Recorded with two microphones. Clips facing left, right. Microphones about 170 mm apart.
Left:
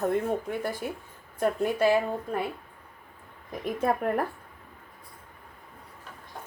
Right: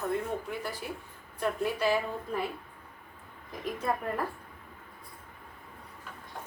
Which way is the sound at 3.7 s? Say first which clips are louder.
Left 6 dB; 60° left (ahead or behind).